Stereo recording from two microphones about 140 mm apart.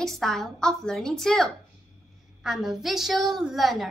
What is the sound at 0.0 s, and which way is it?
A woman's voice, 5° left (ahead or behind).